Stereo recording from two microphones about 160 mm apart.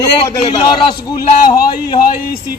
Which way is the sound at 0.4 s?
30° left (ahead or behind).